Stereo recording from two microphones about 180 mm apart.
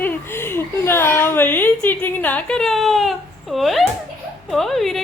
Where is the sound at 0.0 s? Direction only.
15° left (ahead or behind).